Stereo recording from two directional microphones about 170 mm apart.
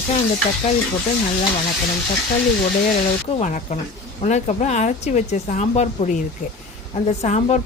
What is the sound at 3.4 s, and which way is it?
A woman's voice, 45° left (ahead or behind).